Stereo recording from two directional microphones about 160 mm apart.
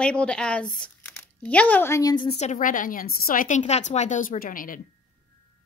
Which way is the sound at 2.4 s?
50° left (ahead or behind).